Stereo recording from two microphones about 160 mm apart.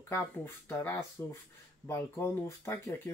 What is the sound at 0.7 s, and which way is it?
Speech, 15° left (ahead or behind).